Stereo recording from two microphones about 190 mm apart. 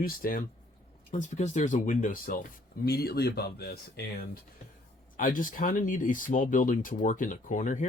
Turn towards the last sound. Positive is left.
turn(degrees=40)  # may be behind; listen again after turning